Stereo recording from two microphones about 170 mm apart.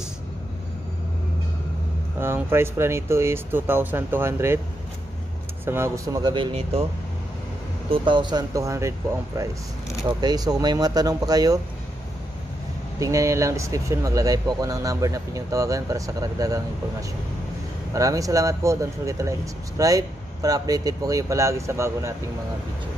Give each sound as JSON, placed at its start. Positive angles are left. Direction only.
{"t": 2.1, "sound": "speech", "side_deg": -15}
{"t": 5.7, "sound": "speech", "side_deg": -15}
{"t": 7.9, "sound": "speech", "side_deg": -30}
{"t": 10.2, "sound": "speech", "side_deg": -25}
{"t": 13.0, "sound": "speech", "side_deg": -20}
{"t": 17.9, "sound": "speech", "side_deg": -20}